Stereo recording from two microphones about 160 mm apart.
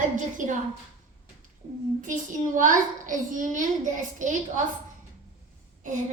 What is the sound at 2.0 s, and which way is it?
A woman's voice, 55° right (ahead or behind).